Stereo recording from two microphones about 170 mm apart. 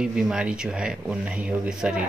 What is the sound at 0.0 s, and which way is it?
Speech, 5° right (ahead or behind).